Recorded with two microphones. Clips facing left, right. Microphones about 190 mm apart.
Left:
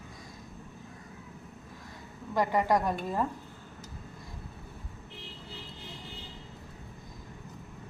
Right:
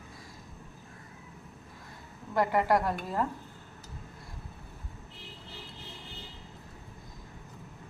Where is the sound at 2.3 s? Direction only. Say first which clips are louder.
Even; 15° left (ahead or behind).